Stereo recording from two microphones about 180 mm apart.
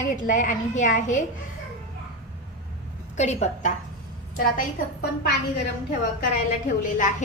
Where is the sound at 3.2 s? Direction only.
40° left (ahead or behind).